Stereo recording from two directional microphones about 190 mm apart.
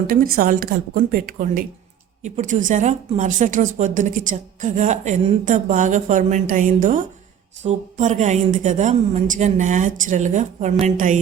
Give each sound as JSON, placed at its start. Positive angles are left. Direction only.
{"t": 0.1, "sound": "a woman's voice", "side_deg": -50}